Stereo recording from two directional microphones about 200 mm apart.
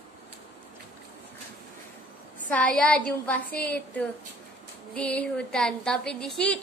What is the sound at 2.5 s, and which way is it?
Speech, 5° left (ahead or behind).